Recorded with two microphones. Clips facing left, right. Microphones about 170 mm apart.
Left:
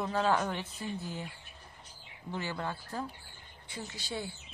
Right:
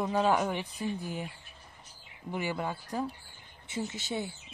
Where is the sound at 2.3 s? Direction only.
15° right (ahead or behind).